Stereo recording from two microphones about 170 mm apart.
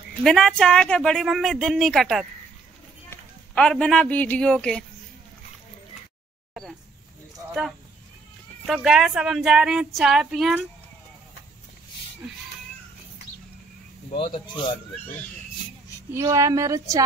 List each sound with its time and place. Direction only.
0.2 s a man's voice: centre (ahead or behind)
8.6 s speech: centre (ahead or behind)
14.1 s speech: 30° left (ahead or behind)
16.1 s speech: 15° right (ahead or behind)